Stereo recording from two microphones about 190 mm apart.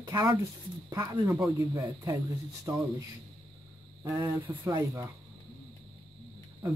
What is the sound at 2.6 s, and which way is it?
Speech, 15° right (ahead or behind).